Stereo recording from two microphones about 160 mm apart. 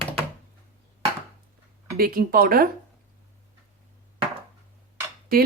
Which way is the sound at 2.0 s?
65° right (ahead or behind).